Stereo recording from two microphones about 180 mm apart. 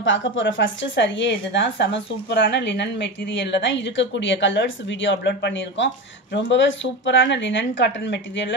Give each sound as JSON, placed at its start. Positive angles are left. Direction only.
{"t": 0.0, "sound": "speech", "side_deg": 90}